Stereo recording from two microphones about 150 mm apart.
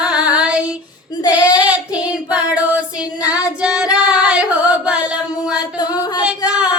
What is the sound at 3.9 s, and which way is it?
Singing, 5° right (ahead or behind).